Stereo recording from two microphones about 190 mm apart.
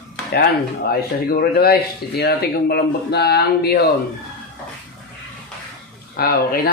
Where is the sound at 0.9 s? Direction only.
50° left (ahead or behind).